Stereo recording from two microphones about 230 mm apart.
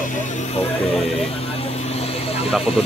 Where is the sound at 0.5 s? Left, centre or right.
Left.